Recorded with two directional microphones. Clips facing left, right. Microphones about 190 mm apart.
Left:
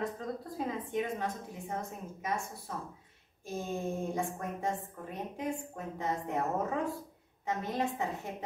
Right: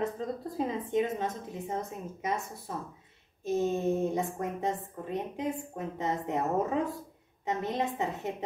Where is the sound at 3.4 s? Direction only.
20° right (ahead or behind).